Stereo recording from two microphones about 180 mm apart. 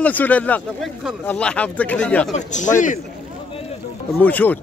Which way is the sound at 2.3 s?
40° left (ahead or behind).